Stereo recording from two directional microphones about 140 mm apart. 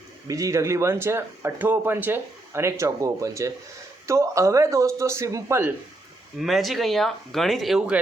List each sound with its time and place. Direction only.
0.3 s speech: 25° right (ahead or behind)
6.4 s speech: centre (ahead or behind)